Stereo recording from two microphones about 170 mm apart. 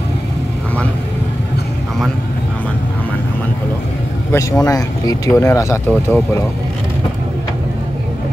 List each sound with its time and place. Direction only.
4.3 s speech: 15° left (ahead or behind)